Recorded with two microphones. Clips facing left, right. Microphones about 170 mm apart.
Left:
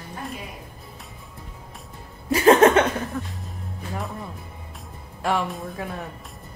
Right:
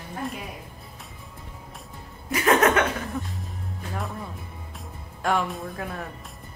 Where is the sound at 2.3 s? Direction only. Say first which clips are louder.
Left 5 dB; 30° left (ahead or behind).